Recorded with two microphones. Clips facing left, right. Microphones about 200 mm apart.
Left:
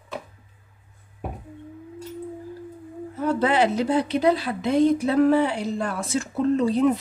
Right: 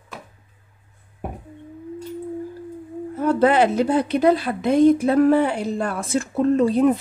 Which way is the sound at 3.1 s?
50° right (ahead or behind).